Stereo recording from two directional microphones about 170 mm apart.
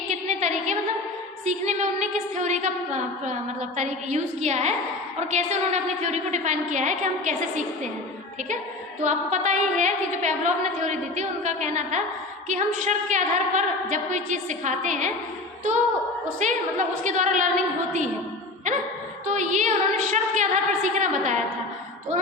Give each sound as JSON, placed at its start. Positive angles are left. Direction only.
{"t": 0.1, "sound": "a sound", "side_deg": -45}
{"t": 1.5, "sound": "a woman's voice", "side_deg": -45}
{"t": 9.0, "sound": "a woman's voice", "side_deg": -45}
{"t": 16.4, "sound": "a woman's voice", "side_deg": -45}
{"t": 19.2, "sound": "a woman's voice", "side_deg": -45}